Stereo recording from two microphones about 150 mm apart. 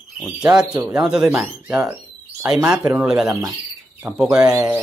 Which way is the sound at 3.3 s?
25° right (ahead or behind).